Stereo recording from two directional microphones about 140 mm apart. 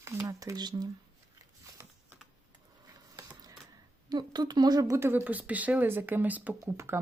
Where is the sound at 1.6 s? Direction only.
15° right (ahead or behind).